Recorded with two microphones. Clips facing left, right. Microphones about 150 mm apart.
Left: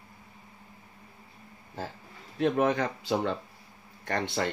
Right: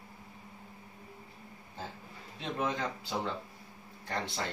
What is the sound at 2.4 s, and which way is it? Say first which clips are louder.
Speech: left 9 dB; 60° left (ahead or behind).